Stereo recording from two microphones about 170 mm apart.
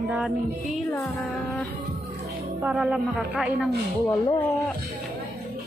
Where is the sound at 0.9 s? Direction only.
15° left (ahead or behind).